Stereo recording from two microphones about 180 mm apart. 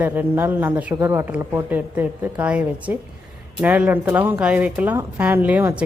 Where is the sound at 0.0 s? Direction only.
10° right (ahead or behind).